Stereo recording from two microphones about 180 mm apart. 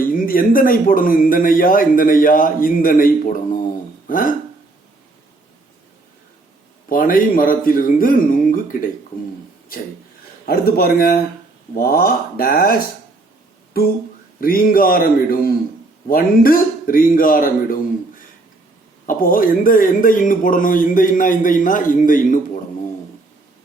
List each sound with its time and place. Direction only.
0.0 s a man's voice: 50° left (ahead or behind)
6.8 s a man's voice: 50° left (ahead or behind)
10.4 s speech: 60° left (ahead or behind)
13.7 s a man's voice: 55° left (ahead or behind)
19.0 s a man's voice: 50° left (ahead or behind)